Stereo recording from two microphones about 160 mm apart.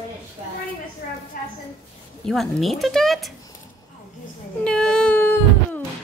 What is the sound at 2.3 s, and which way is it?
Speech, centre (ahead or behind).